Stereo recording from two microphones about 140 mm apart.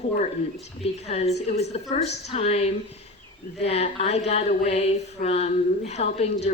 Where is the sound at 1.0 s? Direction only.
50° left (ahead or behind).